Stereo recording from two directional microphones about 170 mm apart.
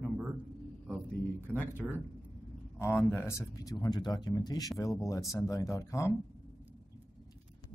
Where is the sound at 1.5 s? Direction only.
5° left (ahead or behind).